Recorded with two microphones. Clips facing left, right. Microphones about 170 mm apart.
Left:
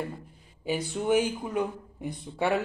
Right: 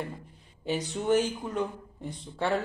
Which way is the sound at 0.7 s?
10° left (ahead or behind).